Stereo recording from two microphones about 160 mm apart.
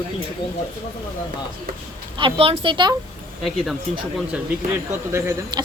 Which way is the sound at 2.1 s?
35° right (ahead or behind).